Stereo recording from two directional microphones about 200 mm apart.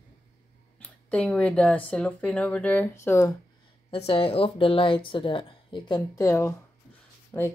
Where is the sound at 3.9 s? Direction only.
30° left (ahead or behind).